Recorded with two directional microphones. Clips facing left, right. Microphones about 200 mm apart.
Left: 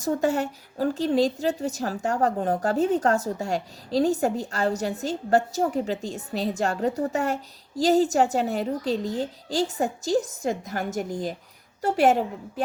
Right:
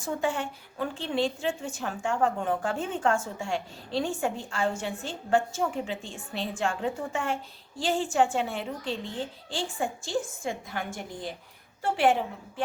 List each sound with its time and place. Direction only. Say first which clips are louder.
0.0 s a woman's voice: left 6 dB; 40° left (ahead or behind)